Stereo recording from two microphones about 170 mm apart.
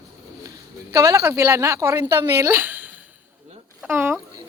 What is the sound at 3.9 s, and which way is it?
Speech, 15° right (ahead or behind).